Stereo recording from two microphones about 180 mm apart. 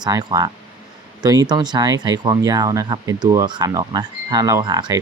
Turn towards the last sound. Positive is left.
turn(degrees=-25)  # may be behind; listen again after turning